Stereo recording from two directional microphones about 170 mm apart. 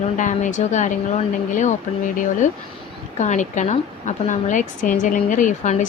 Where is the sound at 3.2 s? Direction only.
45° left (ahead or behind).